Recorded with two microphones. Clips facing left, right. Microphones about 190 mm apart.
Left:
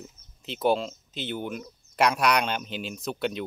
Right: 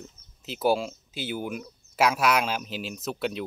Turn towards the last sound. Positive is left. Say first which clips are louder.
# even
turn(degrees=0)  # may be behind; listen again after turning